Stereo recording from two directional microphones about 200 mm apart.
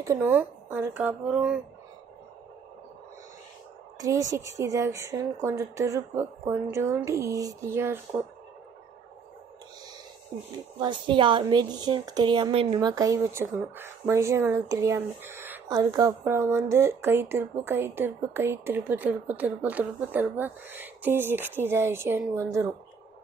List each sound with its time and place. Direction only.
0.0 s a woman's voice: 10° right (ahead or behind)
4.0 s a woman's voice: 15° right (ahead or behind)
10.8 s a woman's voice: 25° right (ahead or behind)